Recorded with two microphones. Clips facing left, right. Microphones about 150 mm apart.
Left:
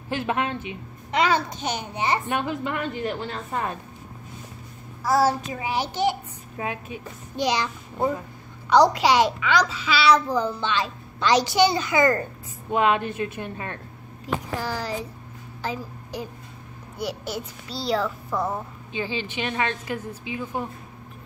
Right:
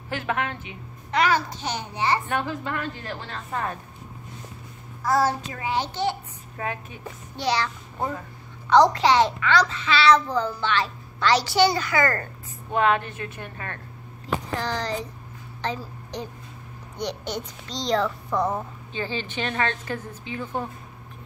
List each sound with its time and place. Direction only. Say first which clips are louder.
0.1 s a child's voice: left 2 dB; 20° left (ahead or behind)
5.0 s a child's voice: left 2 dB; 10° left (ahead or behind)
18.9 s a child's voice: left 2 dB; 15° left (ahead or behind)